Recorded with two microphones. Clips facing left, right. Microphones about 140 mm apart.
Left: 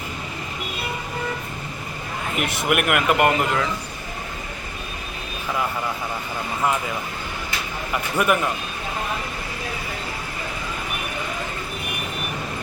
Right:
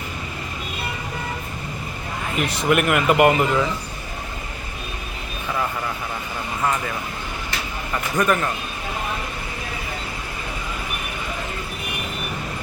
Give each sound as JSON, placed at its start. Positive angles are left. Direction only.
{"t": 2.4, "sound": "speech", "side_deg": 15}
{"t": 2.7, "sound": "speech", "side_deg": 5}
{"t": 8.1, "sound": "speech", "side_deg": 10}